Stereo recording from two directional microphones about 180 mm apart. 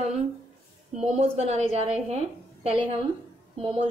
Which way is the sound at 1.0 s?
35° right (ahead or behind).